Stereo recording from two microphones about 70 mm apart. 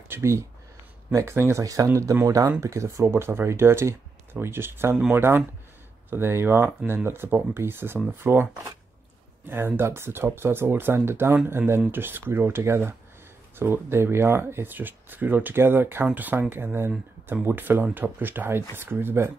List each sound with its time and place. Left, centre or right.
0.1 s speech: right
1.6 s speech: right
9.5 s speech: right